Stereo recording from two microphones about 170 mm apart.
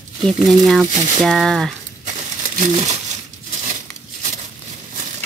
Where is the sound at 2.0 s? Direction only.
45° right (ahead or behind).